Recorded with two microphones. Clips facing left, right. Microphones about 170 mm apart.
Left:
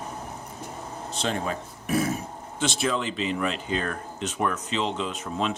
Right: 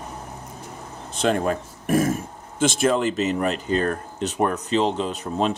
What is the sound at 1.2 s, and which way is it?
Speech, 50° right (ahead or behind).